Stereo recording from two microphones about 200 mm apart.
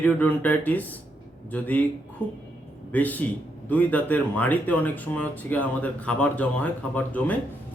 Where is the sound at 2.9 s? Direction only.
10° left (ahead or behind).